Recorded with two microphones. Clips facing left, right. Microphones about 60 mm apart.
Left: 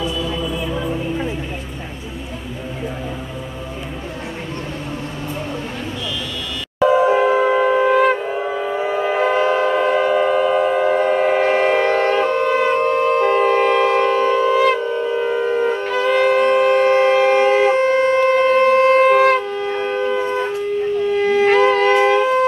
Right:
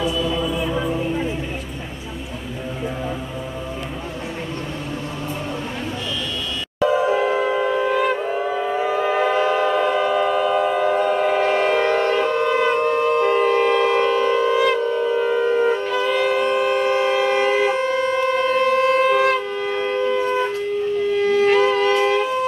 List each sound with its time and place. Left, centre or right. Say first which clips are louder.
6.9 s music: left 5 dB; left
7.3 s shofar: left 5 dB; left
8.4 s a sound: even; centre
9.4 s train: left 2 dB; left
9.7 s train: left 2 dB; left
14.8 s shofar: even; centre
15.8 s shofar: left 3 dB; left
19.7 s shofar: even; centre
21.1 s music: left 1 dB; left
21.5 s shofar: left 3 dB; left